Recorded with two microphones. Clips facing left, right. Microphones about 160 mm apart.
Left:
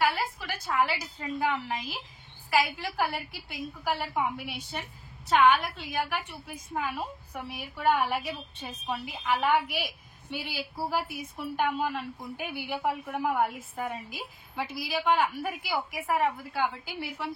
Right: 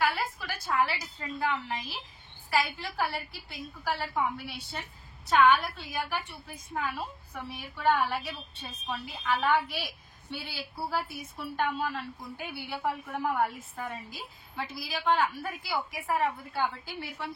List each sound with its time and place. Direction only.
0.7 s a woman's voice: 15° left (ahead or behind)